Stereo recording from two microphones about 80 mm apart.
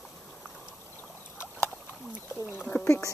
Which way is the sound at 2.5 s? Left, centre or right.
Left.